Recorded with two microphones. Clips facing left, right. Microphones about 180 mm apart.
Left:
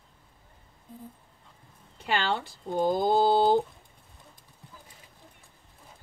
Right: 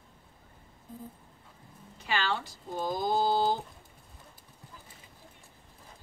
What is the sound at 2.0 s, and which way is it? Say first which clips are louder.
Speech: left 3 dB; 55° left (ahead or behind).